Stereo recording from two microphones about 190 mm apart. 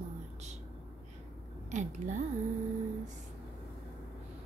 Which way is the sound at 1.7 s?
40° right (ahead or behind).